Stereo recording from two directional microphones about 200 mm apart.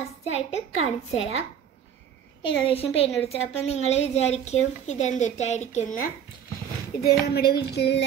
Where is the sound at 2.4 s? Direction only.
30° left (ahead or behind).